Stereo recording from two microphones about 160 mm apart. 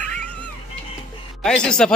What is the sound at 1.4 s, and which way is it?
Speech, 5° left (ahead or behind).